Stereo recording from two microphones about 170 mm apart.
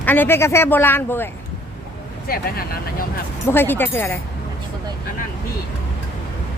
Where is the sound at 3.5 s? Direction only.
15° left (ahead or behind).